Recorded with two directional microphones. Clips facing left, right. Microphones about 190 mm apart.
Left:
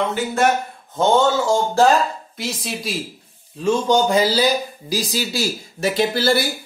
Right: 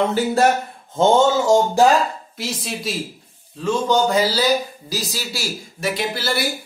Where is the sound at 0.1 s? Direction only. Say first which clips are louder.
Right 2 dB; 35° right (ahead or behind).